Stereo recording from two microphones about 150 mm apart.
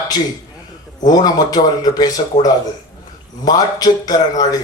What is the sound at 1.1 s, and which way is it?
Speech, 25° left (ahead or behind).